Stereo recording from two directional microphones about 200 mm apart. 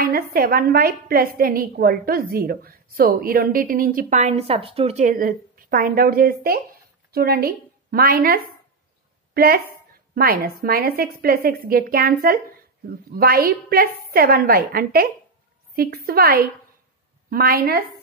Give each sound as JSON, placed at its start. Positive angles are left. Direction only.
{"t": 0.0, "sound": "a woman's voice", "side_deg": -45}